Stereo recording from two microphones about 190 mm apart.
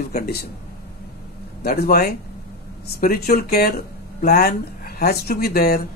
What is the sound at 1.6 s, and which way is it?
Speech, 55° left (ahead or behind).